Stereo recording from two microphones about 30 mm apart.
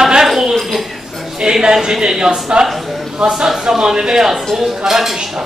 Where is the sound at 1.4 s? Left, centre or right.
Right.